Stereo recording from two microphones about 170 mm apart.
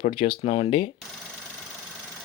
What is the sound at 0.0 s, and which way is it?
Speech, 35° left (ahead or behind).